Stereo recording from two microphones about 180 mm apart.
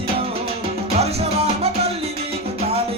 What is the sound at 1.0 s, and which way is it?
Music, 35° right (ahead or behind).